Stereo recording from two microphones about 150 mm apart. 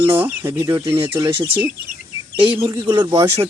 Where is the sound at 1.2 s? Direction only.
30° right (ahead or behind).